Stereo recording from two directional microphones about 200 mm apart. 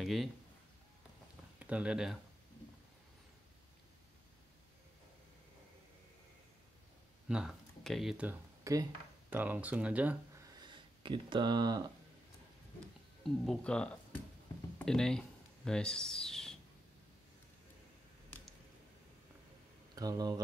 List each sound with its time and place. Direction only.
0.0 s speech: centre (ahead or behind)
1.6 s speech: 5° right (ahead or behind)
7.2 s speech: 5° right (ahead or behind)
10.5 s a sound: 20° right (ahead or behind)
13.2 s speech: 5° left (ahead or behind)
20.0 s speech: 20° right (ahead or behind)